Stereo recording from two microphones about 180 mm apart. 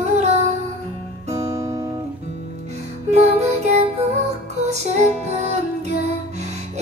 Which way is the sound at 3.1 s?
35° right (ahead or behind).